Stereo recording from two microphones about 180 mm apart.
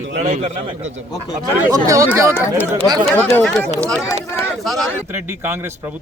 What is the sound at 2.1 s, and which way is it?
Speech, 15° right (ahead or behind).